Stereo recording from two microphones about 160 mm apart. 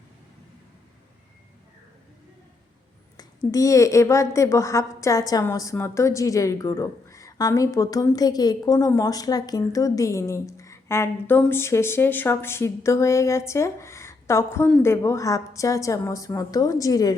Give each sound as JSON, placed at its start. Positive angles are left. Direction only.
{"t": 3.2, "sound": "a woman's voice", "side_deg": 20}